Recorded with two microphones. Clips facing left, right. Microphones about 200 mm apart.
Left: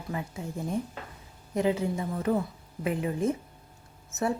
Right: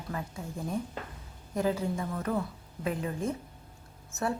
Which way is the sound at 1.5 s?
20° left (ahead or behind).